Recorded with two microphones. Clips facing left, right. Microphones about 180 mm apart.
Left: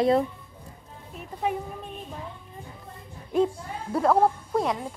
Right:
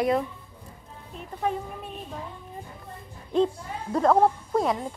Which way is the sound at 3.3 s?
10° left (ahead or behind).